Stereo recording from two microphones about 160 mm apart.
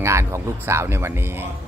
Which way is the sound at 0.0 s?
15° right (ahead or behind).